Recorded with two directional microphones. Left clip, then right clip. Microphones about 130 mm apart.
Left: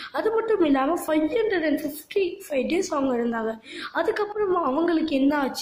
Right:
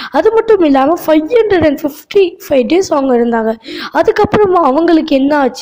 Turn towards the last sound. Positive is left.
turn(degrees=-55)  # may be behind; listen again after turning